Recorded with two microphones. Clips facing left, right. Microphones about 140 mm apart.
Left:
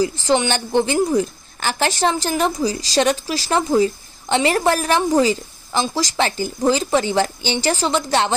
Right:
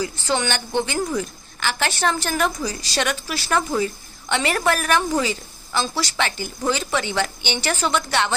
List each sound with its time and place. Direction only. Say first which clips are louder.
0.3 s speech: left 4 dB; 30° left (ahead or behind)